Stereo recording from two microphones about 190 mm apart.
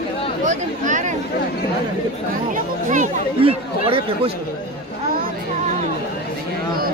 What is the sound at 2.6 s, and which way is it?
Speech, 40° right (ahead or behind).